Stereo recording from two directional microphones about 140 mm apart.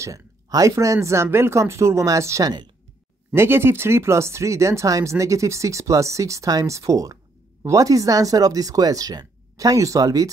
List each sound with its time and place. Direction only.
0.0 s speech: 25° right (ahead or behind)
3.3 s speech: 15° right (ahead or behind)